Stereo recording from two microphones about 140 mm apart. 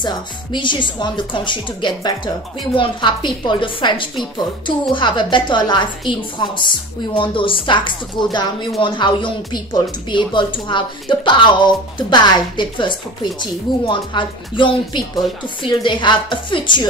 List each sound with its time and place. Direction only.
0.0 s speech: 35° left (ahead or behind)